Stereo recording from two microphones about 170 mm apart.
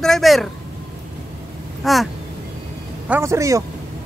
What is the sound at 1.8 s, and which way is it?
Speech, centre (ahead or behind).